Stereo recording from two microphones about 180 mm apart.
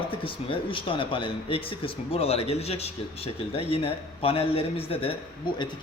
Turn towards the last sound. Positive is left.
turn(degrees=25)  # may be behind; listen again after turning